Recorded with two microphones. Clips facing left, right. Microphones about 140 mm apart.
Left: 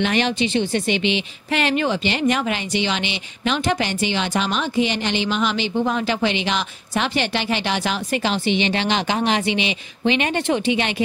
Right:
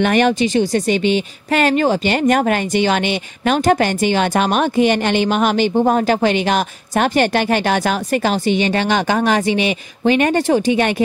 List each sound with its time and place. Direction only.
0.0 s speech: 50° right (ahead or behind)